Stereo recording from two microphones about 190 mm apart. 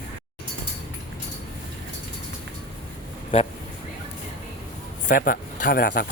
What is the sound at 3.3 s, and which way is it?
Speech, 30° left (ahead or behind).